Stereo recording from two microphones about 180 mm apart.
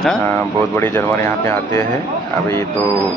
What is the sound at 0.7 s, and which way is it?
Speech, 15° left (ahead or behind).